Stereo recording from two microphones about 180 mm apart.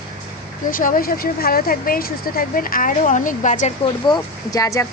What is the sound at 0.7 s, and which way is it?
Speech, 50° left (ahead or behind).